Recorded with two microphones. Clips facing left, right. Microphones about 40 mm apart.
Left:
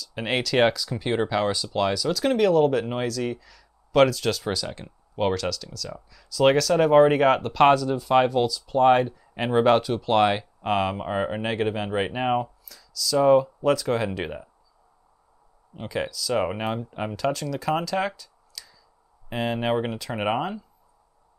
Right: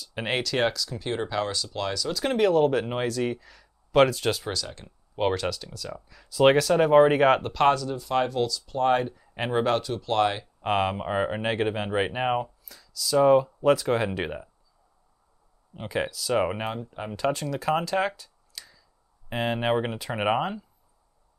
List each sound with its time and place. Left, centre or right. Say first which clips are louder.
0.0 s speech: left 1 dB; right
0.3 s speech: left 2 dB; centre
0.6 s speech: left 5 dB; centre
2.1 s speech: left 1 dB; centre
8.3 s speech: left 4 dB; centre
10.6 s speech: right 2 dB; centre
15.9 s speech: even; right
16.3 s speech: even; centre
17.1 s speech: right 1 dB; centre
17.8 s a sound: even; centre
19.2 s speech: even; centre